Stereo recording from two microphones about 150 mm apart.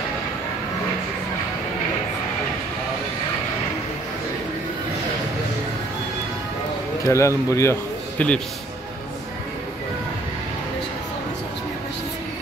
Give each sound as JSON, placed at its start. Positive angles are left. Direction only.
{"t": 7.1, "sound": "a man's voice", "side_deg": 20}